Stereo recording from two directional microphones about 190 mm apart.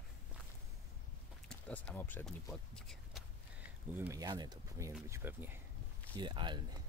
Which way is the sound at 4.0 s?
15° right (ahead or behind).